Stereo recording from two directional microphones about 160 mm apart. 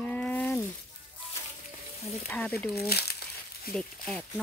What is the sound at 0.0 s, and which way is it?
Sizzle, 10° left (ahead or behind).